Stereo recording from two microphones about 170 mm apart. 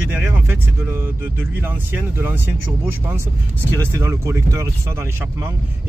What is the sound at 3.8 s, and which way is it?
Speech, 15° right (ahead or behind).